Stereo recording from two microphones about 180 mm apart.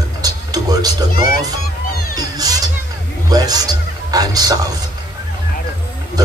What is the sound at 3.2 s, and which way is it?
Speech, 20° right (ahead or behind).